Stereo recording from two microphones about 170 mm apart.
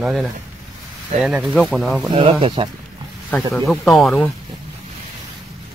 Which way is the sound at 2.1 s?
30° right (ahead or behind).